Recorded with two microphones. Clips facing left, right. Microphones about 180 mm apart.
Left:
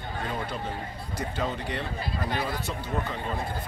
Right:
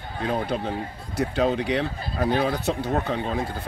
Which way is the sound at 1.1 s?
70° right (ahead or behind).